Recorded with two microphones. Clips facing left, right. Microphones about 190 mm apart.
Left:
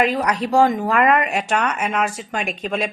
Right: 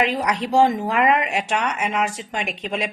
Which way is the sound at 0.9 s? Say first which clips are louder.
Left 2 dB; 55° left (ahead or behind).